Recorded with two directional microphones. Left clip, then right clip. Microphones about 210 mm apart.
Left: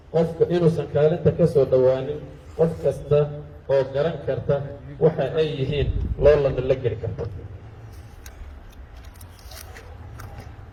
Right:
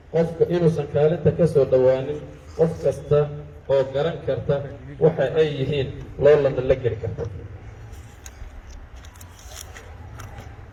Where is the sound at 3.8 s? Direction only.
50° right (ahead or behind).